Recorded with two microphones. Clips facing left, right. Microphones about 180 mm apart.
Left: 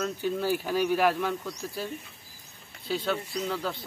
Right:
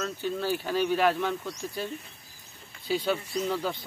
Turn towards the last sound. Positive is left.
turn(degrees=0)  # may be behind; listen again after turning